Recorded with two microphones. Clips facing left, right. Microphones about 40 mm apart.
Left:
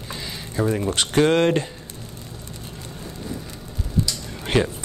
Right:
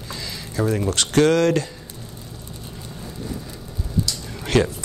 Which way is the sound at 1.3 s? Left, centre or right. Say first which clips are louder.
Right 1 dB; left.